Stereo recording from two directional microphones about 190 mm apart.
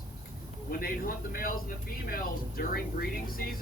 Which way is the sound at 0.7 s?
50° left (ahead or behind).